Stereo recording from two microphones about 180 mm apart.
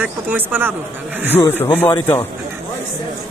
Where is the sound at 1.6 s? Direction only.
10° left (ahead or behind).